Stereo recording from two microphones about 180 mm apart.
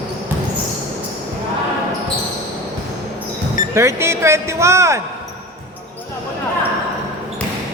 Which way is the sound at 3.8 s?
15° right (ahead or behind).